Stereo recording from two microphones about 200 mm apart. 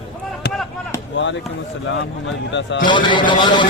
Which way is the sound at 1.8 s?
65° left (ahead or behind).